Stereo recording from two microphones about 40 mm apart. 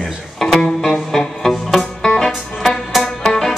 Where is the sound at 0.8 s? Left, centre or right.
Centre.